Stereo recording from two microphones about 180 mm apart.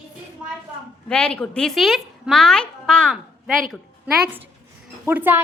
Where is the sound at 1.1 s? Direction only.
5° left (ahead or behind).